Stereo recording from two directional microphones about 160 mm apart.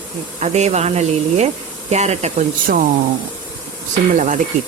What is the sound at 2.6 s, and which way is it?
Speech, 60° right (ahead or behind).